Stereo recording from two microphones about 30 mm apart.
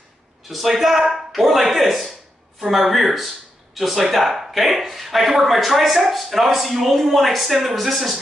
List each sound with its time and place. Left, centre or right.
0.5 s speech: centre